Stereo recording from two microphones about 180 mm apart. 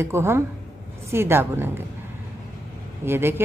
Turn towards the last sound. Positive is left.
turn(degrees=-15)  # may be behind; listen again after turning